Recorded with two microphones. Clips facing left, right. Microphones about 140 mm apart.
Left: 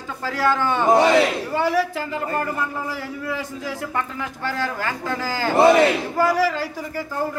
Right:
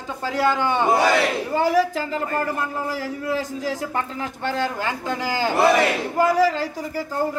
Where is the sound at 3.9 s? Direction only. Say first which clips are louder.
Even; 25° right (ahead or behind).